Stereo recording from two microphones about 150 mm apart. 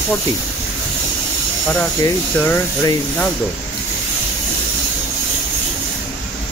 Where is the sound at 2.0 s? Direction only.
15° left (ahead or behind).